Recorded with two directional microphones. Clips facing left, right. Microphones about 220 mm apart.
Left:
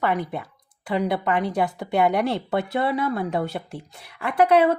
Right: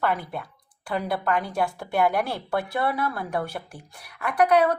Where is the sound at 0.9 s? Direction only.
20° left (ahead or behind).